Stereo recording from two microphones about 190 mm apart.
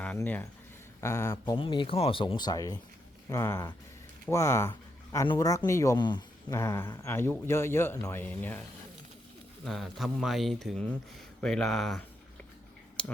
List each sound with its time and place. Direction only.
0.0 s speech: 10° left (ahead or behind)
9.6 s speech: centre (ahead or behind)